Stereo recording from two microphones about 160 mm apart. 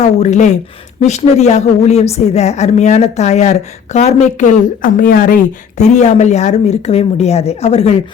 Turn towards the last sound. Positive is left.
turn(degrees=40)  # may be behind; listen again after turning